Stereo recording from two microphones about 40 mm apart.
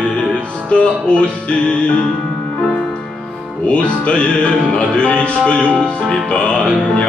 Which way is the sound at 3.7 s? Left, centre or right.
Left.